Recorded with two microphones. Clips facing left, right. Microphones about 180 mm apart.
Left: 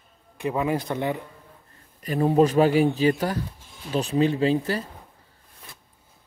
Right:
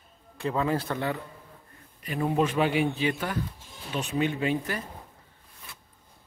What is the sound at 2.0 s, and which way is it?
A man's voice, 40° left (ahead or behind).